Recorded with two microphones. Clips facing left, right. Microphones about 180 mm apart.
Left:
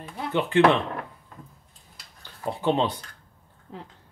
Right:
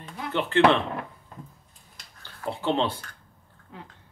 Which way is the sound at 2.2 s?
15° left (ahead or behind).